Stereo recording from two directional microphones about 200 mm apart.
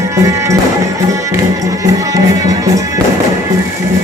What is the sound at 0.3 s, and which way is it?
Speech, 15° right (ahead or behind).